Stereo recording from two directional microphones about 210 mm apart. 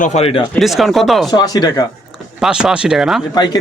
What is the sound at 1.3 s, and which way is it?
Speech, 20° left (ahead or behind).